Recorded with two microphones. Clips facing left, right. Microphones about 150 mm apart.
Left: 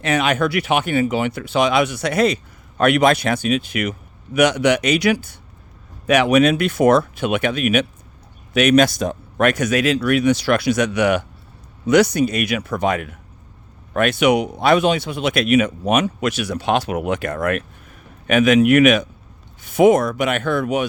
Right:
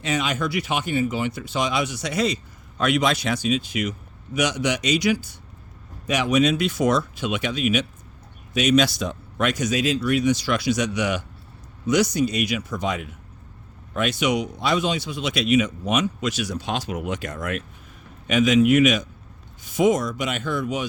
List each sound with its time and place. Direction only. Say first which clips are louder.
0.0 s speech: left 6 dB; 65° left (ahead or behind)